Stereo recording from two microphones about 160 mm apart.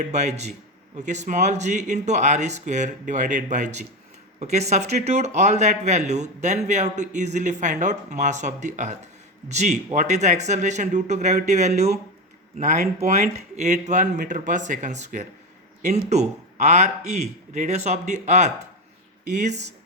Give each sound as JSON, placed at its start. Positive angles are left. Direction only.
{"t": 0.0, "sound": "speech", "side_deg": -45}